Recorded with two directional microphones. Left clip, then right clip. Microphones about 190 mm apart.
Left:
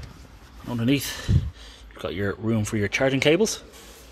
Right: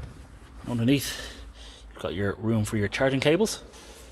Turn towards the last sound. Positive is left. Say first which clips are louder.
# left 3 dB
turn(degrees=10)  # may be behind; listen again after turning